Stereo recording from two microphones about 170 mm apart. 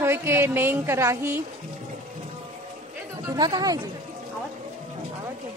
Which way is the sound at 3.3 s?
25° right (ahead or behind).